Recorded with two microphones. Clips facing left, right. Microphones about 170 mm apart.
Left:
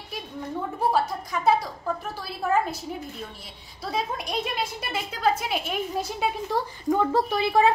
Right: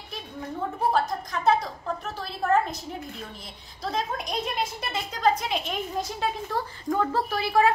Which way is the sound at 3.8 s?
5° left (ahead or behind).